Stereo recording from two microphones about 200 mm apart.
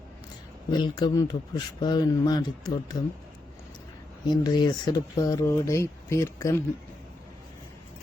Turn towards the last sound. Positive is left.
turn(degrees=15)  # may be behind; listen again after turning